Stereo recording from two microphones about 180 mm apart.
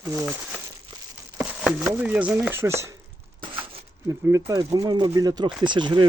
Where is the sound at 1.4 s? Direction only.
5° right (ahead or behind).